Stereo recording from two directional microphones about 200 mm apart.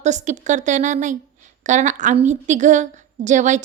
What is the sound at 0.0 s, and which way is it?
A woman's voice, 35° right (ahead or behind).